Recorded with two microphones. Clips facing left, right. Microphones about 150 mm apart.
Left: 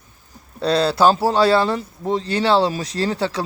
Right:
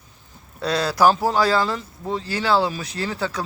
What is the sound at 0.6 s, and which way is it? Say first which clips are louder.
Speech: left 3 dB; 30° left (ahead or behind).